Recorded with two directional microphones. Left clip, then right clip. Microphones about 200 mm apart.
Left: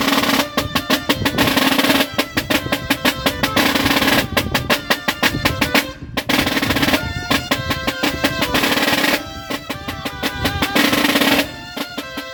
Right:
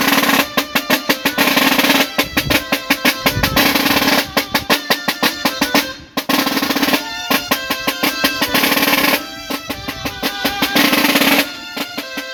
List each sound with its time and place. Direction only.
0.0 s drum: 30° right (ahead or behind)